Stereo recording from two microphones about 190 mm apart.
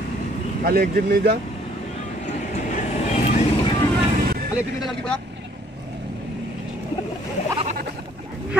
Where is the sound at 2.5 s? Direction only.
40° left (ahead or behind).